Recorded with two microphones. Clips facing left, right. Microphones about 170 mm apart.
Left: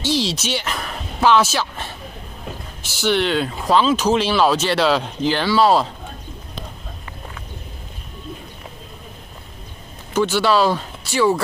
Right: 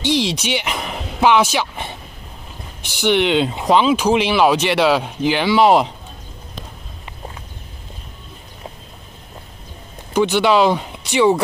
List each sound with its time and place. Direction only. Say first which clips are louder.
0.0 s a sound: right 2 dB; 15° right (ahead or behind)
2.8 s speech: right 3 dB; 15° right (ahead or behind)
10.1 s speech: right 2 dB; 15° right (ahead or behind)